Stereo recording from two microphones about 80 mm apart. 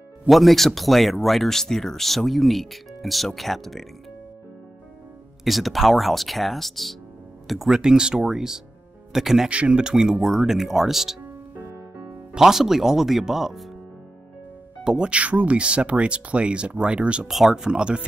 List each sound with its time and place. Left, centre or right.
0.3 s speech: centre
5.4 s speech: centre
12.4 s speech: centre
14.8 s speech: centre
17.3 s speech: centre